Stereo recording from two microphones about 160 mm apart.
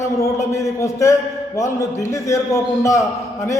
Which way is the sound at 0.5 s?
20° left (ahead or behind).